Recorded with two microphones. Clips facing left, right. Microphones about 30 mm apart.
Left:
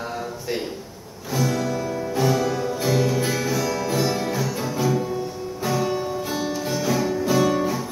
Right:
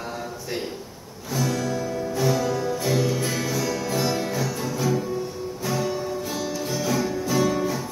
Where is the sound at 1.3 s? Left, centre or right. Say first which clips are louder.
Left 2 dB; centre.